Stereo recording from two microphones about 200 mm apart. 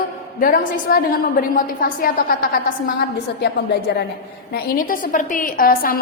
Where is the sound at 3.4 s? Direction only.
55° left (ahead or behind).